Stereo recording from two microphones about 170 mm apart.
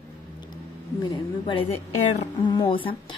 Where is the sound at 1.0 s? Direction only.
30° left (ahead or behind).